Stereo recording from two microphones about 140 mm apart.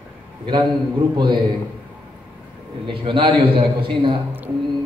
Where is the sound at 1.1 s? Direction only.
35° right (ahead or behind).